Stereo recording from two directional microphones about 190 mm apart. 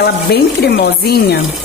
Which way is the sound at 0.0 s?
60° left (ahead or behind).